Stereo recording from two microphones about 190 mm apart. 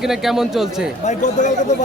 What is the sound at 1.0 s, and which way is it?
Speech, 40° left (ahead or behind).